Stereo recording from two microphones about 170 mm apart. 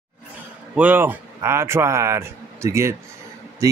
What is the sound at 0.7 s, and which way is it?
A man's voice, 10° right (ahead or behind).